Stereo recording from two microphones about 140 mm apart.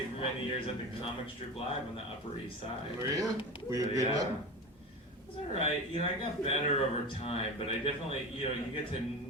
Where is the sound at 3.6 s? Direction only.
25° right (ahead or behind).